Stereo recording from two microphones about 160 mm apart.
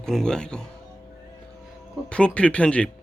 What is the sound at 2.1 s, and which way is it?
Speech, 5° left (ahead or behind).